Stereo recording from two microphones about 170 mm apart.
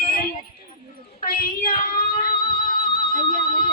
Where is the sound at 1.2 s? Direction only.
55° left (ahead or behind).